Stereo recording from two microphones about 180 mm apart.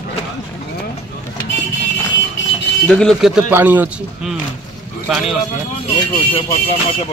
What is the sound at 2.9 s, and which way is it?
Speech, 5° left (ahead or behind).